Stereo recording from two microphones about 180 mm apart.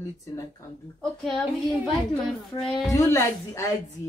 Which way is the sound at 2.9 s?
15° left (ahead or behind).